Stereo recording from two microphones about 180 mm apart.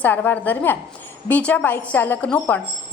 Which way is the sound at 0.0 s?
10° left (ahead or behind).